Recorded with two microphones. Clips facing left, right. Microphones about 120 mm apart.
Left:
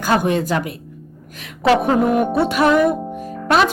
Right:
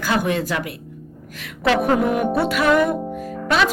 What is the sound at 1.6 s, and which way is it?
A woman's voice, 30° left (ahead or behind).